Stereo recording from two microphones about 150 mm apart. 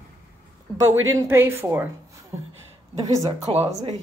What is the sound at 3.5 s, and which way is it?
Speech, 35° right (ahead or behind).